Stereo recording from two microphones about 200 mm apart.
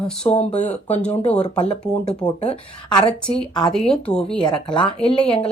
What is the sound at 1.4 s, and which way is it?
A woman's voice, 30° left (ahead or behind).